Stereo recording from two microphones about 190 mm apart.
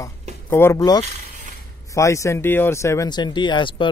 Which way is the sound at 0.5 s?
10° left (ahead or behind).